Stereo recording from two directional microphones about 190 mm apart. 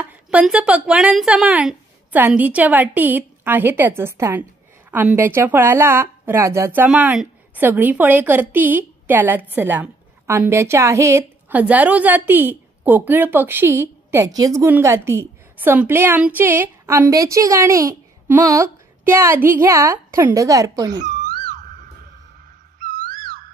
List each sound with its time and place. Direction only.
0.0 s speech: 5° right (ahead or behind)
22.8 s music: 45° right (ahead or behind)